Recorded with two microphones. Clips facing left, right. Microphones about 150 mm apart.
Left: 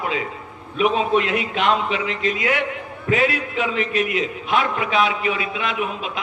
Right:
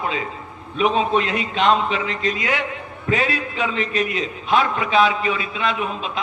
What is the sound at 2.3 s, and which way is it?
A man's voice, 25° right (ahead or behind).